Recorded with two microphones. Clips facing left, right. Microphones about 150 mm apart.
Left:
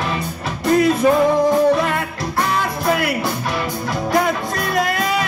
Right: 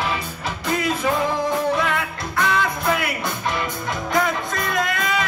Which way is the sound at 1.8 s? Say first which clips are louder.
Left 3 dB; 40° left (ahead or behind).